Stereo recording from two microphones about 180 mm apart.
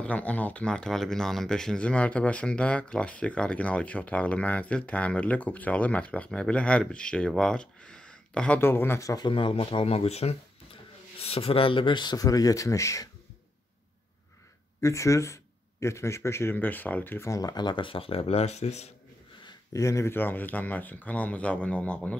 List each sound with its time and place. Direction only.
0.0 s speech: 10° left (ahead or behind)
14.8 s speech: 15° left (ahead or behind); by 18.9 s 35° left (ahead or behind)
19.4 s speech: 15° left (ahead or behind)